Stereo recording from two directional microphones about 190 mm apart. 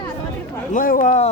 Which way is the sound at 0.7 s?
45° left (ahead or behind).